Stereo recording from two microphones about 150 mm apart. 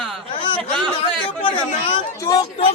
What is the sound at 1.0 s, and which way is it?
Speech, 35° left (ahead or behind).